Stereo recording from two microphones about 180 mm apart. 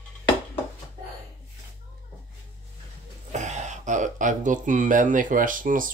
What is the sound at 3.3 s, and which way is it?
Speech, 40° right (ahead or behind).